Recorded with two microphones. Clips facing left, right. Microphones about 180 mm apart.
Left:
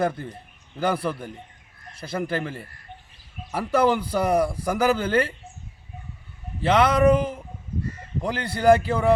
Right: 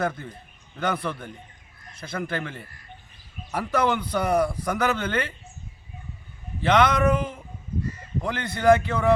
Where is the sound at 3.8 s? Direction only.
35° left (ahead or behind).